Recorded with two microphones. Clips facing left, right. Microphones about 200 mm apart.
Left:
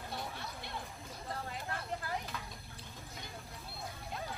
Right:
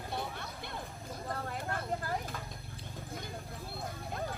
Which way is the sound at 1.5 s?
45° right (ahead or behind).